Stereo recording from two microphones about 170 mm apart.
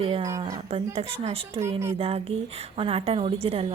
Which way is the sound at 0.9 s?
35° right (ahead or behind).